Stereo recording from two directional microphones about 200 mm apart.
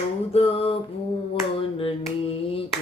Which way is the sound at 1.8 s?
30° left (ahead or behind).